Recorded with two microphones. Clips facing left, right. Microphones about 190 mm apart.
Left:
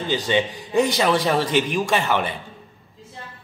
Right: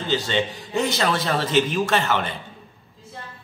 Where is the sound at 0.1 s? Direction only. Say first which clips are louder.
Left 2 dB; 15° left (ahead or behind).